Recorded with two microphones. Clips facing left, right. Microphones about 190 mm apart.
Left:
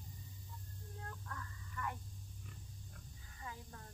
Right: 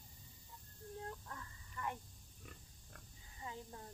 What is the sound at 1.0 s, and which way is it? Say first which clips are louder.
Speech: right 1 dB; 20° right (ahead or behind).